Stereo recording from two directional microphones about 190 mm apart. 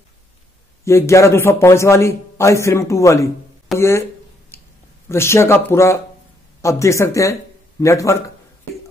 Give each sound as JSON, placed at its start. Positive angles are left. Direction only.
{"t": 0.8, "sound": "a man's voice", "side_deg": 15}
{"t": 4.5, "sound": "a sound", "side_deg": 15}
{"t": 5.0, "sound": "a man's voice", "side_deg": 15}